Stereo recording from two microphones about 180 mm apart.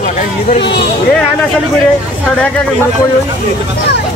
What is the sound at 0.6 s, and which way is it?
Speech, 70° left (ahead or behind).